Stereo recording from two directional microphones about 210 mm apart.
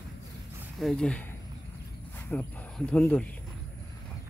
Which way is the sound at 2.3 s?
10° left (ahead or behind).